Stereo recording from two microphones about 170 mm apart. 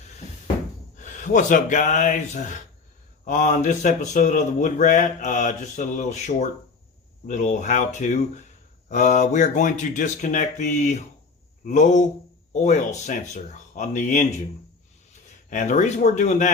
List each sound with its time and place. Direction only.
0.9 s speech: 45° left (ahead or behind)
15.4 s speech: 45° left (ahead or behind)